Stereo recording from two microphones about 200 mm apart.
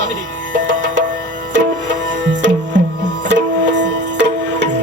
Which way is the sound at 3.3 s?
65° right (ahead or behind).